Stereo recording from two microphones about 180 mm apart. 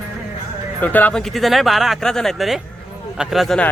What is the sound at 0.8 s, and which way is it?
Speech, 10° left (ahead or behind).